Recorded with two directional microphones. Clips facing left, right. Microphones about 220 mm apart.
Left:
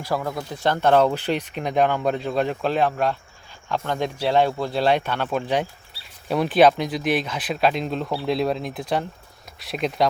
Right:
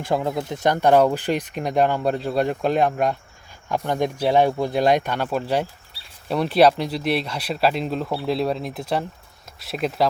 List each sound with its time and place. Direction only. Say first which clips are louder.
0.0 s speech: right 3 dB; 20° right (ahead or behind); by 6.7 s centre (ahead or behind)
6.7 s speech: even; 35° right (ahead or behind)
7.3 s speech: even; centre (ahead or behind)